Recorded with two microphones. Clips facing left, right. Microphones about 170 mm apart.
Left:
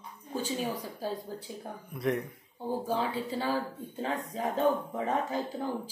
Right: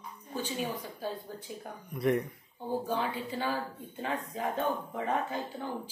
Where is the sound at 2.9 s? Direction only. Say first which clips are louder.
Left 2 dB; 35° left (ahead or behind).